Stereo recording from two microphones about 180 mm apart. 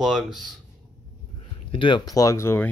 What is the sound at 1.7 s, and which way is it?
Speech, 30° left (ahead or behind).